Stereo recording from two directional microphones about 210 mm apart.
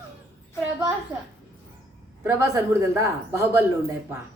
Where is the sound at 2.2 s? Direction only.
10° right (ahead or behind).